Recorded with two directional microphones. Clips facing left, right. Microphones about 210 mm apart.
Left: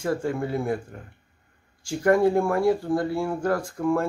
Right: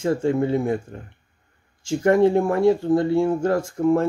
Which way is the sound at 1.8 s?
25° right (ahead or behind).